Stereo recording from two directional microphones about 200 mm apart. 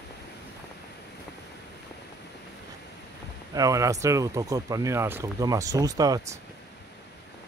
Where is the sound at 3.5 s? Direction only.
15° right (ahead or behind).